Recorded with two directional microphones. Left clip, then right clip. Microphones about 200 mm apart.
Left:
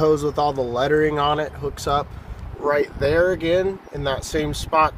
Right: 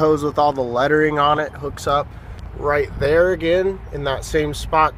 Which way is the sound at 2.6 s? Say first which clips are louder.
Right 1 dB; 25° right (ahead or behind).